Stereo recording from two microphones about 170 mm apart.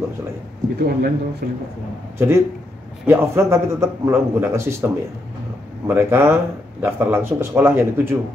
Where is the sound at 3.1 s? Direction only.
15° right (ahead or behind).